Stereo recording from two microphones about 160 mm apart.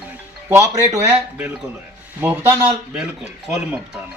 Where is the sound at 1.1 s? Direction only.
10° right (ahead or behind).